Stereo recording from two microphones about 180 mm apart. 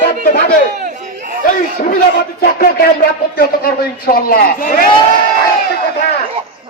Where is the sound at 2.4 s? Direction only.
55° left (ahead or behind).